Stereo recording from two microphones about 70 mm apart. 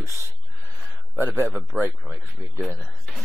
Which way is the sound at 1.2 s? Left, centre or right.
Right.